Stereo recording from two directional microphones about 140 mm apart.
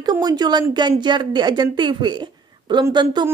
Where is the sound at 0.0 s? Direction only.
30° right (ahead or behind).